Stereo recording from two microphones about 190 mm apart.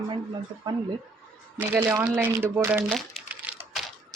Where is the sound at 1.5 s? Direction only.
10° right (ahead or behind).